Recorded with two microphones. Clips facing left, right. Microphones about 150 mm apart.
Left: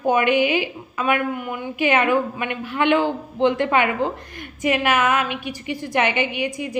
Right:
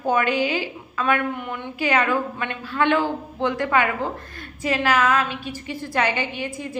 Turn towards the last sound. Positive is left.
turn(degrees=15)  # may be behind; listen again after turning